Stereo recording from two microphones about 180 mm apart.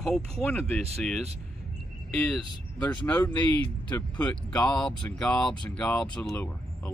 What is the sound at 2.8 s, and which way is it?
Speech, 10° left (ahead or behind).